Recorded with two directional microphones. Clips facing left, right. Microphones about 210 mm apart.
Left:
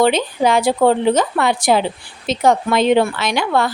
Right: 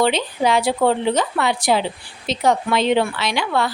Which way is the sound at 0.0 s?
50° left (ahead or behind).